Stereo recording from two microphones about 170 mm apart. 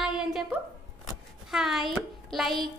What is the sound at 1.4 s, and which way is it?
A woman's voice, centre (ahead or behind).